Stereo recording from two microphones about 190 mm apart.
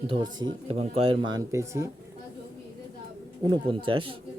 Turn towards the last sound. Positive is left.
turn(degrees=-25)  # may be behind; listen again after turning